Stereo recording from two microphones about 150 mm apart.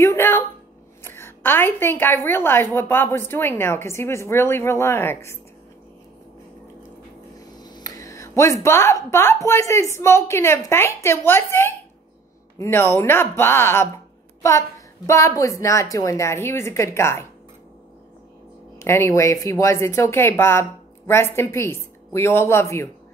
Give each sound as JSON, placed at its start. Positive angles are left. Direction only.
{"t": 0.0, "sound": "a woman's voice", "side_deg": 15}
{"t": 7.5, "sound": "a woman's voice", "side_deg": 30}
{"t": 15.0, "sound": "a woman's voice", "side_deg": 20}
{"t": 18.8, "sound": "a woman's voice", "side_deg": 20}